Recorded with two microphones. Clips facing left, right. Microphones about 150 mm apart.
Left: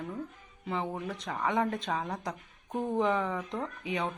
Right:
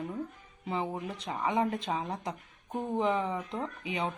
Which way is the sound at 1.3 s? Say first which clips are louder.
Even; 5° right (ahead or behind).